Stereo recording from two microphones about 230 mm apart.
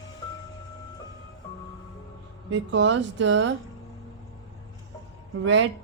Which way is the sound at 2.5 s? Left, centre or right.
Right.